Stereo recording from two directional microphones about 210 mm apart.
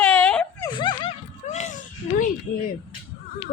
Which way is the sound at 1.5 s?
35° left (ahead or behind).